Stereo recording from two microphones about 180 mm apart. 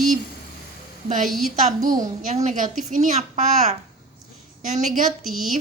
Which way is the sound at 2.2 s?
40° right (ahead or behind).